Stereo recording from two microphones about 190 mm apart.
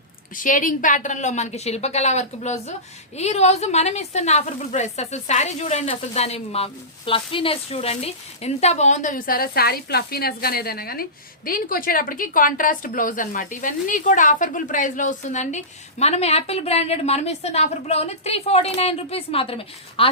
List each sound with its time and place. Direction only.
0.3 s a woman's voice: 45° left (ahead or behind); by 20.1 s 30° left (ahead or behind)